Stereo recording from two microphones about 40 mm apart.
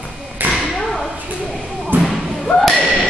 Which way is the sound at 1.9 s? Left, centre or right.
Right.